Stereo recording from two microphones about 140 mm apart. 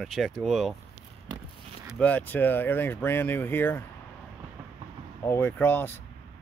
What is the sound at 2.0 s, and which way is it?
Speech, 10° left (ahead or behind).